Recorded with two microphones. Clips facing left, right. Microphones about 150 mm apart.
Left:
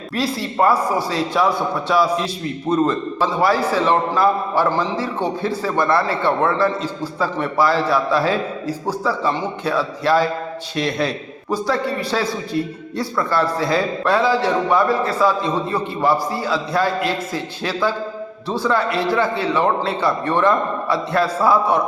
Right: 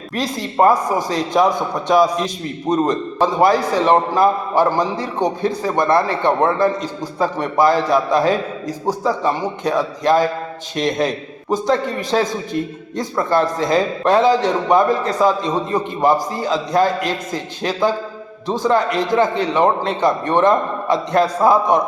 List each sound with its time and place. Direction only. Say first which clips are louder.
0.1 s speech: left 1 dB; 15° right (ahead or behind)
11.5 s a man's voice: right 3 dB; 20° right (ahead or behind)
13.1 s a man's voice: right 3 dB; 20° right (ahead or behind)